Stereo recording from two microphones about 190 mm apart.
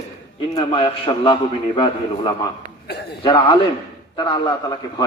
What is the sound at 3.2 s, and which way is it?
A man's voice, 25° left (ahead or behind).